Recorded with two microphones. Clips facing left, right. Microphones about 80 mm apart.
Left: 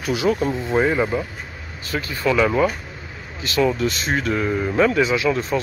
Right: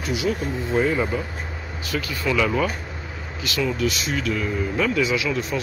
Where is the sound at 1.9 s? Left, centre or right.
Left.